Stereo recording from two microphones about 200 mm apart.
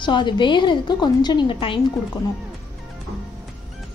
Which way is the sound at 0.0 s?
25° left (ahead or behind).